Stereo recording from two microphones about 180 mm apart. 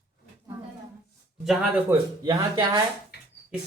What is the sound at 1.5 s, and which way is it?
Speech, 10° right (ahead or behind).